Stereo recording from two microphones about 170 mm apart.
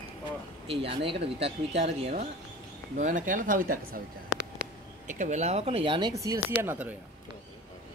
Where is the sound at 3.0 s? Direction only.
45° right (ahead or behind).